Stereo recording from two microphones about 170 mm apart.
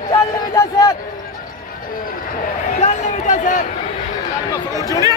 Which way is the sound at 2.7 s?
45° left (ahead or behind).